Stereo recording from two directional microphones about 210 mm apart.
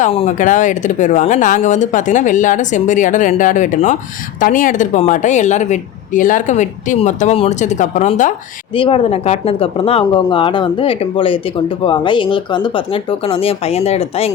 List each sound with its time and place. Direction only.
0.0 s speech: 30° left (ahead or behind)
8.7 s speech: 25° left (ahead or behind)